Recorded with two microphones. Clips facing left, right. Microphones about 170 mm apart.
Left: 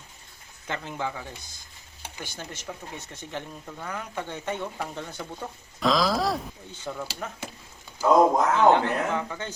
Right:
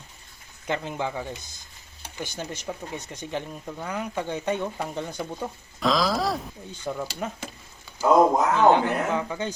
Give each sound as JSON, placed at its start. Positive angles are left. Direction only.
{"t": 0.7, "sound": "speech", "side_deg": -15}
{"t": 2.2, "sound": "speech", "side_deg": -15}
{"t": 5.8, "sound": "a sound", "side_deg": 0}
{"t": 6.9, "sound": "speech", "side_deg": -15}
{"t": 8.0, "sound": "speech", "side_deg": -5}